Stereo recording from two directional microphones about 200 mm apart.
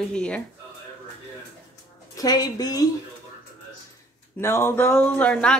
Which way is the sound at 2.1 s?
20° left (ahead or behind).